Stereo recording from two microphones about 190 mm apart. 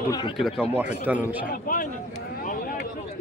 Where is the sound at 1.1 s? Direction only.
45° left (ahead or behind).